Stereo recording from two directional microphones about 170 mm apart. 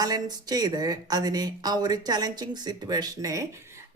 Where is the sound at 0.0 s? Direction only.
25° right (ahead or behind).